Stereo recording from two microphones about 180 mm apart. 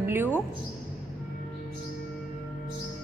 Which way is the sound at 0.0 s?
10° right (ahead or behind).